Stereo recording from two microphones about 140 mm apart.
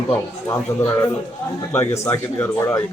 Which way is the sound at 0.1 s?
20° left (ahead or behind).